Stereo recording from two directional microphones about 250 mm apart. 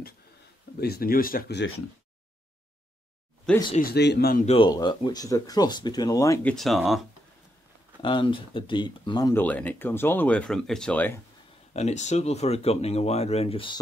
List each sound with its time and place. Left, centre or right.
0.7 s speech: left
3.7 s speech: left
4.6 s speech: centre
6.5 s speech: centre
8.0 s speech: centre
11.7 s speech: left